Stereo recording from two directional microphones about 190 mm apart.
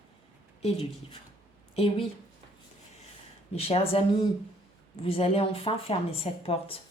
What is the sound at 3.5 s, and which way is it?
A woman's voice, 30° left (ahead or behind).